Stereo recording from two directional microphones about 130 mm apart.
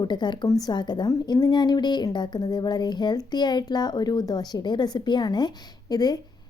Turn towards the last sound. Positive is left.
turn(degrees=30)  # may be behind; listen again after turning